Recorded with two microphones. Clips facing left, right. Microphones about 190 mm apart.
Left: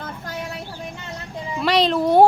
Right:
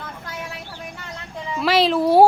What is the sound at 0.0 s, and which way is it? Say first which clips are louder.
Vehicle: left 3 dB; 40° left (ahead or behind).